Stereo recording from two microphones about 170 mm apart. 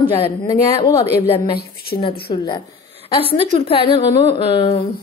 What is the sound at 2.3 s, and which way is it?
A woman's voice, 30° left (ahead or behind).